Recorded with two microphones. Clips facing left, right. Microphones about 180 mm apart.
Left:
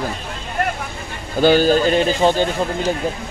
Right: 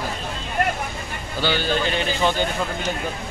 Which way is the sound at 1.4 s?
40° left (ahead or behind).